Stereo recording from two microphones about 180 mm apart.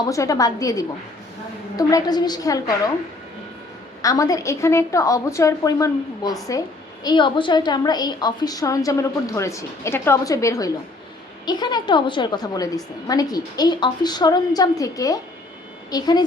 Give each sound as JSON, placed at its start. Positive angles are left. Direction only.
{"t": 0.0, "sound": "a woman's voice", "side_deg": 20}
{"t": 4.0, "sound": "a woman's voice", "side_deg": 20}